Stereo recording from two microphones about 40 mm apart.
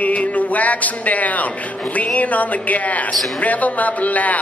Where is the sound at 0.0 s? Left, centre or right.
Left.